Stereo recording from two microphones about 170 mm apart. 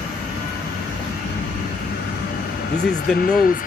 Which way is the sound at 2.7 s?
75° left (ahead or behind).